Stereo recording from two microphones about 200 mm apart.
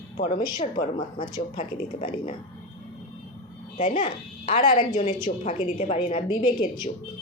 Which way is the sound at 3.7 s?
40° left (ahead or behind).